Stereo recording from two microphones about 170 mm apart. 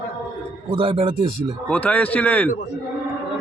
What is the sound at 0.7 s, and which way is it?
Speech, 30° right (ahead or behind).